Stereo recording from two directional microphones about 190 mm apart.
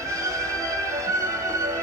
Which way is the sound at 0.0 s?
15° right (ahead or behind).